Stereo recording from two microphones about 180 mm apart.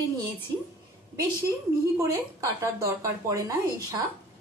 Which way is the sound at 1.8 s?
15° right (ahead or behind).